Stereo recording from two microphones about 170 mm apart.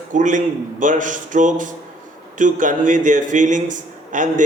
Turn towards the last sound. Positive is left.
turn(degrees=-50)  # may be behind; listen again after turning